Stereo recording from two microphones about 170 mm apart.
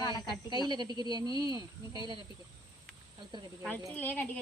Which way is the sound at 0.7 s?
25° right (ahead or behind).